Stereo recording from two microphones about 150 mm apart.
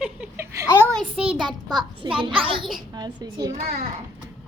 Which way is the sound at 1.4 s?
30° right (ahead or behind).